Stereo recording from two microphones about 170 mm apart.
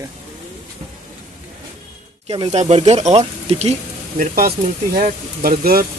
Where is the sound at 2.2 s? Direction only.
30° right (ahead or behind).